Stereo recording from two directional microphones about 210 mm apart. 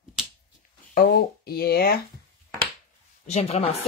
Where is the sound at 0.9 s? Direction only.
45° left (ahead or behind).